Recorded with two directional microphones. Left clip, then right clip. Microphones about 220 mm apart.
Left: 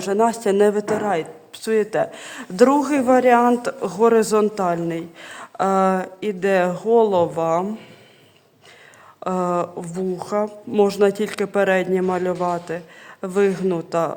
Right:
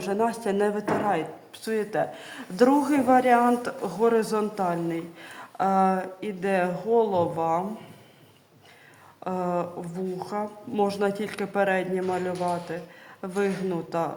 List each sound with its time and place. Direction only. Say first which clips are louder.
0.0 s a man's voice: left 7 dB; 45° left (ahead or behind)
9.2 s a man's voice: left 6 dB; 50° left (ahead or behind)